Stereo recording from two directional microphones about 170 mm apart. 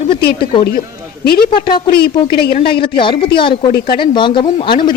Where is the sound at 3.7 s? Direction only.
65° left (ahead or behind).